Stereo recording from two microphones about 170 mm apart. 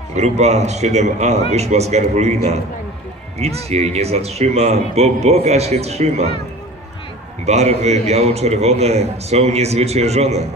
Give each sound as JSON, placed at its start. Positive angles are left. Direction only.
{"t": 0.1, "sound": "a man's voice", "side_deg": -40}
{"t": 7.4, "sound": "a man's voice", "side_deg": -40}